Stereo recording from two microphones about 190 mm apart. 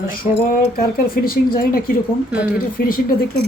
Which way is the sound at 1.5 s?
50° left (ahead or behind).